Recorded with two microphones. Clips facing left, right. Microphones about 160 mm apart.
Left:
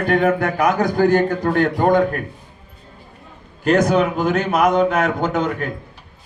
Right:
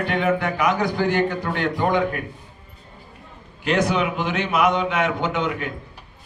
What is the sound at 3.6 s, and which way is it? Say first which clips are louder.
A man's voice: left 5 dB; 45° left (ahead or behind).